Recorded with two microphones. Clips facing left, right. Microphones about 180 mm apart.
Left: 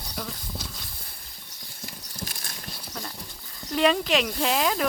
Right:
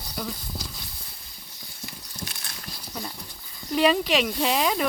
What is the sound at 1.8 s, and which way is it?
Horse, 40° left (ahead or behind).